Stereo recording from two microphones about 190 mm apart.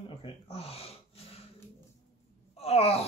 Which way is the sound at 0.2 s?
30° left (ahead or behind).